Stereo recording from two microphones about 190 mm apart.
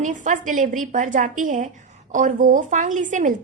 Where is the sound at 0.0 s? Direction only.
40° right (ahead or behind).